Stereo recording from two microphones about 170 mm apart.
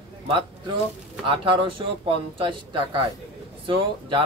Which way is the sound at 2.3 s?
30° right (ahead or behind).